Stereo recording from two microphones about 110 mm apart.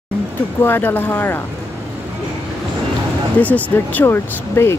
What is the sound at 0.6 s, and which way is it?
Speech, 20° left (ahead or behind).